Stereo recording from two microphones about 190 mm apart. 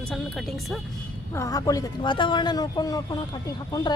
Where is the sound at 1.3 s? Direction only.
15° left (ahead or behind).